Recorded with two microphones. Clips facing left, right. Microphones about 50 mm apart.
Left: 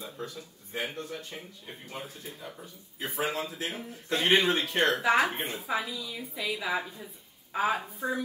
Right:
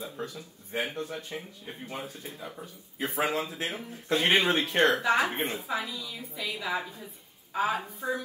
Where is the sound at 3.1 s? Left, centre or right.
Right.